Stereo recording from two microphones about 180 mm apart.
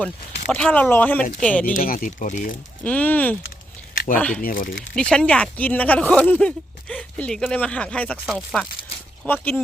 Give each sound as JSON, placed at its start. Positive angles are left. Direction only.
{"t": 0.5, "sound": "speech", "side_deg": 10}
{"t": 1.7, "sound": "speech", "side_deg": 50}
{"t": 2.8, "sound": "speech", "side_deg": 10}
{"t": 3.9, "sound": "a sound", "side_deg": 50}
{"t": 4.4, "sound": "speech", "side_deg": 50}
{"t": 4.9, "sound": "speech", "side_deg": 5}